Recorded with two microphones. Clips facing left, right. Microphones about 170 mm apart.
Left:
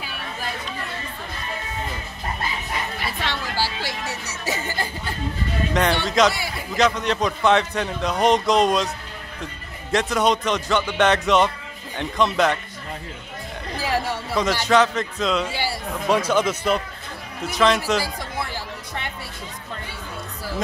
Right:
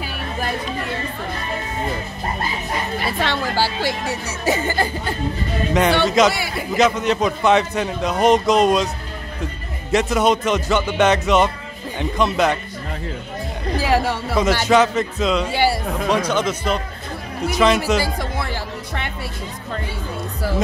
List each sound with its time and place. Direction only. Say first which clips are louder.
3.1 s speech: right 6 dB; 60° right (ahead or behind)
5.7 s a man's voice: right 6 dB; 5° right (ahead or behind)
6.3 s a man's voice: right 5 dB; 70° right (ahead or behind)
6.8 s a man's voice: right 3 dB; 5° right (ahead or behind)
13.7 s a sound: right 5 dB; 75° right (ahead or behind)
14.4 s a man's voice: right 3 dB; 5° right (ahead or behind)
16.1 s a man's voice: left 1 dB; 5° left (ahead or behind)
18.0 s music: right 5 dB; 70° right (ahead or behind)